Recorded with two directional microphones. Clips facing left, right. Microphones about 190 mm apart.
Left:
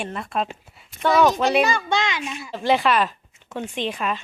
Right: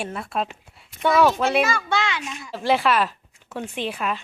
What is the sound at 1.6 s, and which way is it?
Speech, 35° left (ahead or behind).